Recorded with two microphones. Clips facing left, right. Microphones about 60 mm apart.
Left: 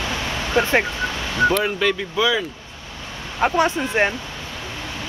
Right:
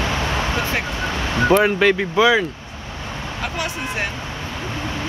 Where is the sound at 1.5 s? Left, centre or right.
Right.